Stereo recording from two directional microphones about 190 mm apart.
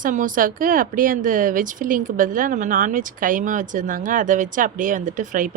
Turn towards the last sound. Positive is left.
turn(degrees=-45)  # may be behind; listen again after turning